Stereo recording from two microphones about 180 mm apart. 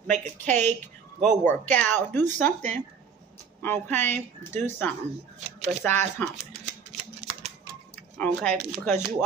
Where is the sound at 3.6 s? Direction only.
10° left (ahead or behind).